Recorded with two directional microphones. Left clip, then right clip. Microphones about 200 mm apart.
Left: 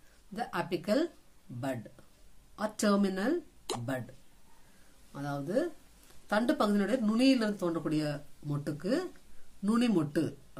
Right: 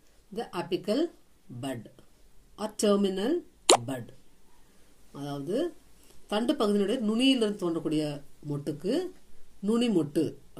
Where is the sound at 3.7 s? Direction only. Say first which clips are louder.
Right 17 dB; 45° right (ahead or behind).